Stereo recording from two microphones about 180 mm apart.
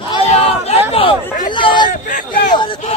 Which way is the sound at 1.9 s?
45° left (ahead or behind).